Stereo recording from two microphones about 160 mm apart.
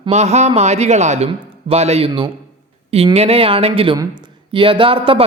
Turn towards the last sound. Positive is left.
turn(degrees=-35)  # may be behind; listen again after turning